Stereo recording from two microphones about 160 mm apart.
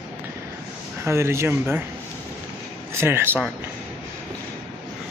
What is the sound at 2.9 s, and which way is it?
Speech, 15° right (ahead or behind).